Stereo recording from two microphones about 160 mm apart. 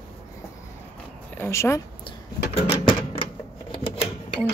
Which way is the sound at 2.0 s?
35° left (ahead or behind).